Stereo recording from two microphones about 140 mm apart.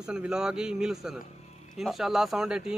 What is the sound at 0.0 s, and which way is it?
Speech, 5° right (ahead or behind).